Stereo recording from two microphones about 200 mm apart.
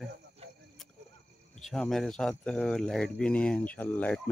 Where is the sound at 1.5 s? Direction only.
Centre (ahead or behind).